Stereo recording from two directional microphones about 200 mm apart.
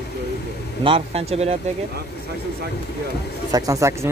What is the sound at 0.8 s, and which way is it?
Speech, 30° right (ahead or behind).